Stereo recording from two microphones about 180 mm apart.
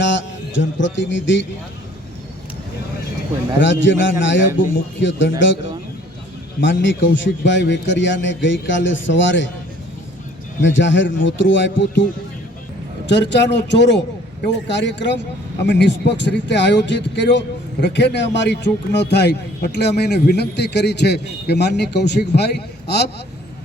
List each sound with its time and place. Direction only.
0.0 s speech: 90° left
3.6 s a man's voice: 90° left
6.6 s a man's voice: 90° left
10.6 s a man's voice: 90° left
13.1 s speech: 75° left (ahead or behind)